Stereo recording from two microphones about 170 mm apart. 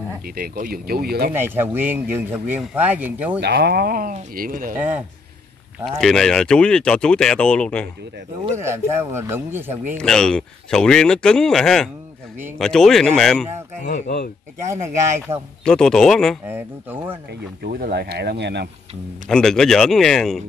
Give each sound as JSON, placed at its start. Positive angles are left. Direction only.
{"t": 0.2, "sound": "speech", "side_deg": -55}
{"t": 1.3, "sound": "speech", "side_deg": -15}
{"t": 3.3, "sound": "speech", "side_deg": -75}
{"t": 4.7, "sound": "speech", "side_deg": -10}
{"t": 5.9, "sound": "speech", "side_deg": 0}
{"t": 8.6, "sound": "speech", "side_deg": -15}
{"t": 9.9, "sound": "speech", "side_deg": 5}
{"t": 14.7, "sound": "speech", "side_deg": -15}
{"t": 15.6, "sound": "speech", "side_deg": 5}
{"t": 16.4, "sound": "speech", "side_deg": -10}
{"t": 17.3, "sound": "speech", "side_deg": -60}
{"t": 19.2, "sound": "speech", "side_deg": 5}